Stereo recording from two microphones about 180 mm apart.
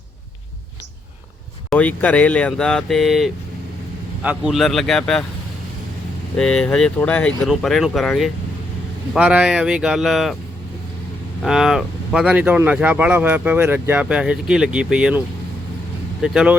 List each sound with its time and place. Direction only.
1.7 s speech: 10° left (ahead or behind)
6.3 s speech: 5° left (ahead or behind)
11.4 s speech: 5° right (ahead or behind)
16.2 s speech: 5° right (ahead or behind)